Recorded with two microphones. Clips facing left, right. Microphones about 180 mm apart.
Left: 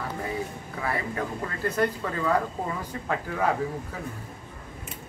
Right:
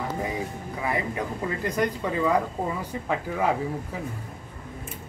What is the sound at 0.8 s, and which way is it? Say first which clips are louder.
A man's voice: right 1 dB; 15° right (ahead or behind).